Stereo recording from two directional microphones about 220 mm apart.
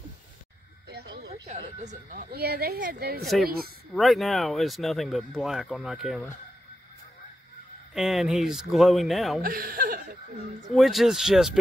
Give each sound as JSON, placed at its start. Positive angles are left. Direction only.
{"t": 0.8, "sound": "a sound", "side_deg": -50}
{"t": 1.8, "sound": "speech", "side_deg": -35}
{"t": 3.9, "sound": "speech", "side_deg": 0}
{"t": 7.9, "sound": "speech", "side_deg": 0}
{"t": 9.4, "sound": "speech", "side_deg": -40}
{"t": 10.7, "sound": "speech", "side_deg": 0}